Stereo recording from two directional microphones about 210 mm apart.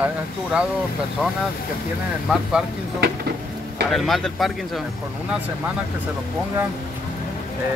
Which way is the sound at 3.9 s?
Centre (ahead or behind).